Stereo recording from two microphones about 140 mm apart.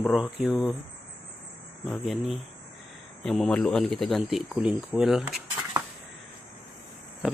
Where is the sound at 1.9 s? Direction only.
Centre (ahead or behind).